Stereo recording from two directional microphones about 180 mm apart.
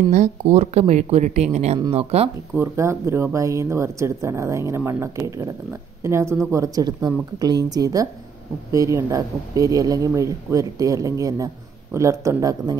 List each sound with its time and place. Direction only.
0.1 s speech: 40° right (ahead or behind)
2.5 s speech: 15° right (ahead or behind)